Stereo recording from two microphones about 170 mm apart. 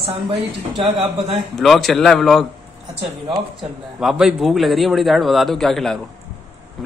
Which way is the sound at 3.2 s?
30° right (ahead or behind).